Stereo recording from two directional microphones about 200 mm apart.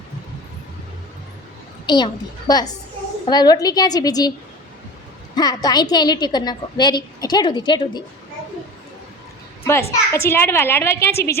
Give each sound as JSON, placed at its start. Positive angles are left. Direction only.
{"t": 2.5, "sound": "a woman's voice", "side_deg": 20}
{"t": 5.3, "sound": "a woman's voice", "side_deg": 20}
{"t": 9.6, "sound": "a child's voice", "side_deg": 15}